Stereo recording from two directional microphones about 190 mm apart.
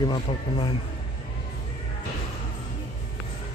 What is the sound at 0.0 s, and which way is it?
Speech, 25° left (ahead or behind).